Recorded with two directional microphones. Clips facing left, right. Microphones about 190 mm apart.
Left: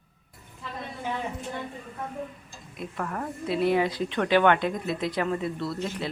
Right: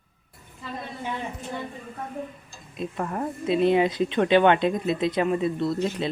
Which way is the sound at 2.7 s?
20° right (ahead or behind).